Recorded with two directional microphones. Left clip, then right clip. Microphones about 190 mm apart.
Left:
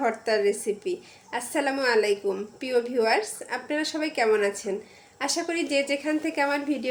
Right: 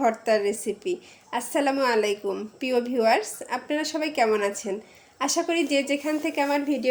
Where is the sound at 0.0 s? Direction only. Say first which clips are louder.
Right 2 dB; 20° right (ahead or behind).